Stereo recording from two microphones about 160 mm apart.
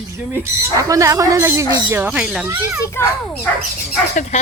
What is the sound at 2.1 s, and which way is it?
Speech, 5° right (ahead or behind).